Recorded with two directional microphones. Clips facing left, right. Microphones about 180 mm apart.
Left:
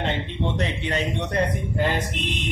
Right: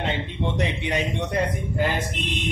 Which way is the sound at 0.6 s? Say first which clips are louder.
Right 3 dB; 15° right (ahead or behind).